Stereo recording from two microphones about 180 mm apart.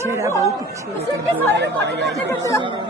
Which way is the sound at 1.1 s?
70° right (ahead or behind).